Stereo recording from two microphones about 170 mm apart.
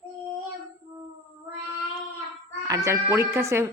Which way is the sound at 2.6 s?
20° right (ahead or behind).